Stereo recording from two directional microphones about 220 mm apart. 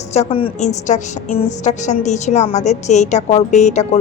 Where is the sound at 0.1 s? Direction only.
25° left (ahead or behind).